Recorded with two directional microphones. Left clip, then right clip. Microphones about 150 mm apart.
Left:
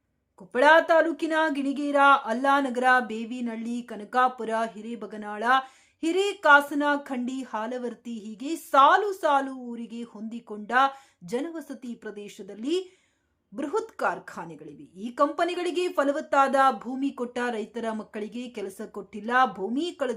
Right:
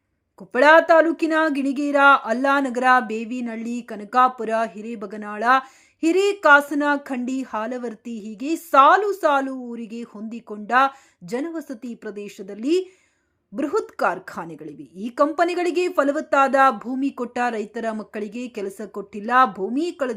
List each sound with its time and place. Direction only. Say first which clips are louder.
0.5 s speech: right 5 dB; 25° right (ahead or behind)